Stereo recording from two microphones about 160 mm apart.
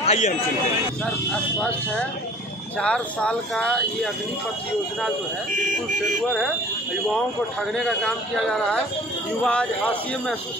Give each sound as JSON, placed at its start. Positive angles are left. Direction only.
{"t": 0.0, "sound": "a man's voice", "side_deg": 45}
{"t": 2.8, "sound": "speech", "side_deg": 5}
{"t": 7.7, "sound": "speech", "side_deg": 5}